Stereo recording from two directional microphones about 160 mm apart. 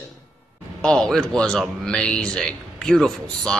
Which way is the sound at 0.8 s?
5° left (ahead or behind).